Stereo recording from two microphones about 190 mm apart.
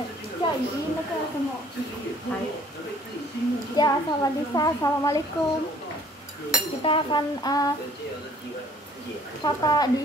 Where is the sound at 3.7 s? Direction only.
20° left (ahead or behind).